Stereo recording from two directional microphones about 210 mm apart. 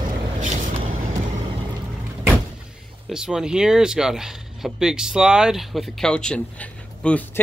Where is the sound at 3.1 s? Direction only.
5° right (ahead or behind).